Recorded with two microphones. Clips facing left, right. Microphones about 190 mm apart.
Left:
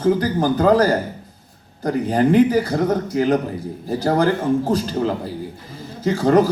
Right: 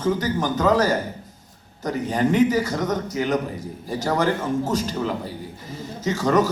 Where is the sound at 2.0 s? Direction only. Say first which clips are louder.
Left 4 dB; 35° left (ahead or behind).